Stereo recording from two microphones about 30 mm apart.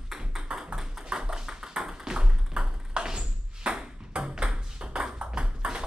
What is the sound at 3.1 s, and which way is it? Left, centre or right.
Ping, right.